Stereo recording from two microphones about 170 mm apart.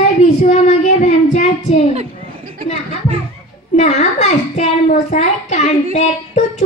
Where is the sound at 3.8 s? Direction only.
40° left (ahead or behind).